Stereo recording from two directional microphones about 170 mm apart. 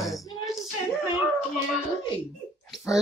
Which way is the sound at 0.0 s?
Centre (ahead or behind).